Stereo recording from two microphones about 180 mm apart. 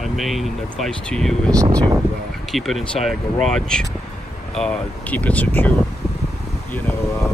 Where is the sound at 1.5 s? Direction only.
20° right (ahead or behind).